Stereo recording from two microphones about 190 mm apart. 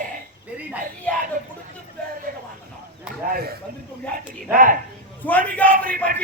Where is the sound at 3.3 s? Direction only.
55° right (ahead or behind).